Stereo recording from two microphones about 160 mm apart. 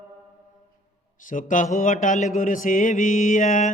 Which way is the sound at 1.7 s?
55° left (ahead or behind).